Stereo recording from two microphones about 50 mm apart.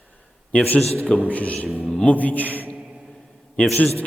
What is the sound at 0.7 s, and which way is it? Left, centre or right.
A man's voice, left.